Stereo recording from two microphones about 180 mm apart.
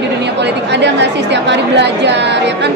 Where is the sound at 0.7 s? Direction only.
75° right (ahead or behind).